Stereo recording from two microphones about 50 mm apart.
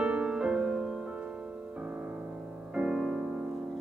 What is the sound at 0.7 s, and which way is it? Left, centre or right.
Music, centre.